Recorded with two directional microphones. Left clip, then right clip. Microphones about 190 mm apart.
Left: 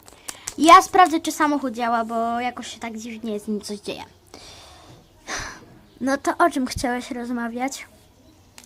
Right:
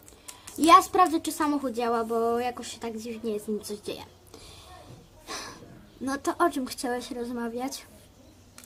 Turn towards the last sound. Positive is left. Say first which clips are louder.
# left 6 dB
turn(degrees=40)  # may be behind; listen again after turning